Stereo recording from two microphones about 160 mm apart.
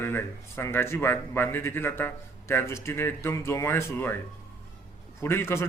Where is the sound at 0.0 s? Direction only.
15° left (ahead or behind).